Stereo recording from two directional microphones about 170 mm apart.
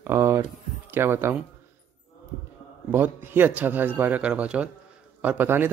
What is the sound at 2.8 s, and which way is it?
Speech, 10° right (ahead or behind).